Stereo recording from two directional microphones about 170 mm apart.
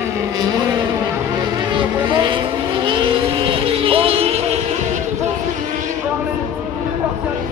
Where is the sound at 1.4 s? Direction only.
25° right (ahead or behind).